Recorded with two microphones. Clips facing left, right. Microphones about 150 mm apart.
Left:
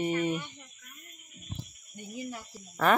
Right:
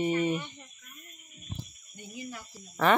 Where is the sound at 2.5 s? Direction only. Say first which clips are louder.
Right 1 dB; 5° left (ahead or behind).